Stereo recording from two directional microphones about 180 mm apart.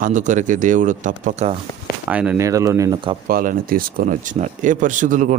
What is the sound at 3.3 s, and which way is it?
Speech, 55° right (ahead or behind).